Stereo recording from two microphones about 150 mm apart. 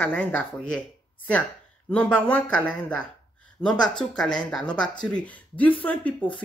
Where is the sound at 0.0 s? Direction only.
10° left (ahead or behind).